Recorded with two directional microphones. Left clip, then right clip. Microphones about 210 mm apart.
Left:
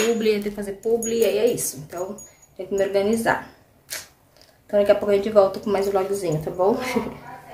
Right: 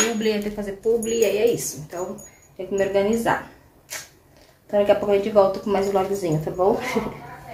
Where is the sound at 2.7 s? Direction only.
15° left (ahead or behind).